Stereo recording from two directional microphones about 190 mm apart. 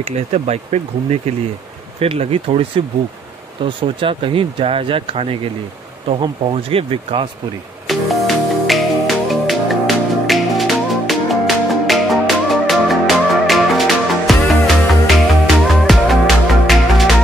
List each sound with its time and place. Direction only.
0.0 s speech: 35° right (ahead or behind)
7.8 s music: centre (ahead or behind)